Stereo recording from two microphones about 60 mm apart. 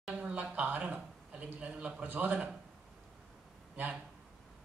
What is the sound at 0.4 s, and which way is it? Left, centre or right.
A man's voice, right.